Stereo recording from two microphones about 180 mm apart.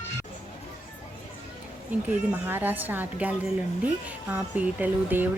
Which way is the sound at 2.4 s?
10° right (ahead or behind).